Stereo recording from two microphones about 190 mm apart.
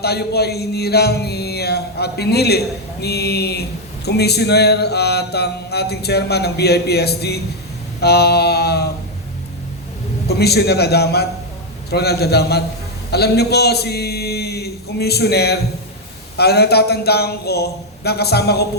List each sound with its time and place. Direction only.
0.0 s speech: 60° left (ahead or behind)
10.2 s speech: 60° left (ahead or behind)